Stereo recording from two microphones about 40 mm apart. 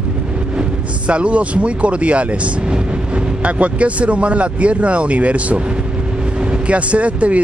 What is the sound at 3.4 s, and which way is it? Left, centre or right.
Speech, right.